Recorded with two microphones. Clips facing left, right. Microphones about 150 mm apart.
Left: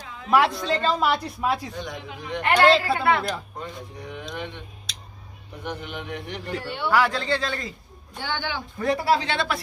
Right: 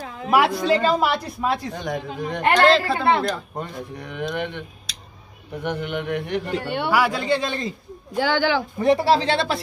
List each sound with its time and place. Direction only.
0.6 s speech: 70° right (ahead or behind)
0.8 s a woman's voice: 5° right (ahead or behind)
1.7 s speech: 50° right (ahead or behind)
2.5 s a woman's voice: 5° left (ahead or behind)
3.0 s speech: 30° right (ahead or behind)
4.0 s speech: 65° right (ahead or behind)
6.9 s a man's voice: 10° right (ahead or behind)
8.2 s speech: 90° right
8.7 s speech: 25° right (ahead or behind)